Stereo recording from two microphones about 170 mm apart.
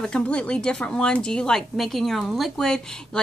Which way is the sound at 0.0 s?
5° left (ahead or behind).